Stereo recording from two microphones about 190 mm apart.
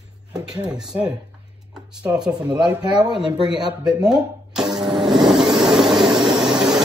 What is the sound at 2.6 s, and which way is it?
Speech, 25° right (ahead or behind).